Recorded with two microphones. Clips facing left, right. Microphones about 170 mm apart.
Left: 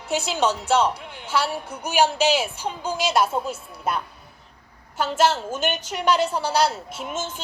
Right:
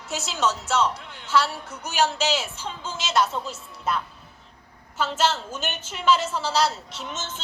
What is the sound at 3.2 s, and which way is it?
Speech, 55° left (ahead or behind).